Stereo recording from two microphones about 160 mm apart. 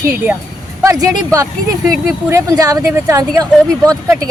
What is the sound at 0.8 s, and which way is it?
Speech, 20° right (ahead or behind).